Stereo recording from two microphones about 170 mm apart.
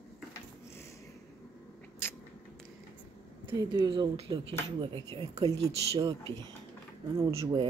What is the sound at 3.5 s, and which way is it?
Speech, 20° right (ahead or behind).